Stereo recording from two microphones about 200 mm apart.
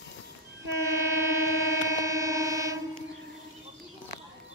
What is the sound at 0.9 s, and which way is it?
Train, 15° right (ahead or behind).